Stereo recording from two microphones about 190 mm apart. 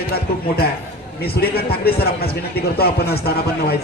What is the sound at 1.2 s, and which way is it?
A man's voice, 55° left (ahead or behind).